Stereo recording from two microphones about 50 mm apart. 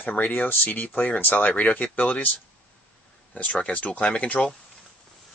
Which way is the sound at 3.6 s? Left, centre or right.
Left.